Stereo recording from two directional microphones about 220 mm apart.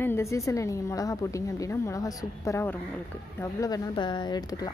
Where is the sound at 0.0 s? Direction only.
10° left (ahead or behind).